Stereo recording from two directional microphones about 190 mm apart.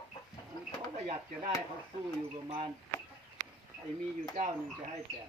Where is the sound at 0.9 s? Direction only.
35° right (ahead or behind).